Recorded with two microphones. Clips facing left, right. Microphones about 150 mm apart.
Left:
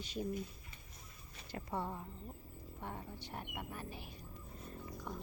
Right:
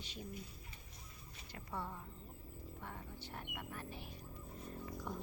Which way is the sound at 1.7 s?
25° left (ahead or behind).